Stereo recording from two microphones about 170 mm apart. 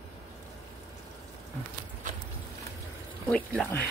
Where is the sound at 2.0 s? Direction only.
50° right (ahead or behind).